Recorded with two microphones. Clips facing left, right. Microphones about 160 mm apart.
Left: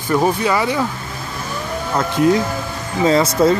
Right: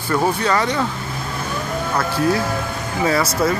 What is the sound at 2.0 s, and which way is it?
Speech, 20° left (ahead or behind).